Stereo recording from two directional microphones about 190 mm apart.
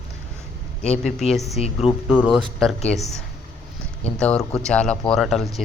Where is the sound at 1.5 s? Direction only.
35° left (ahead or behind).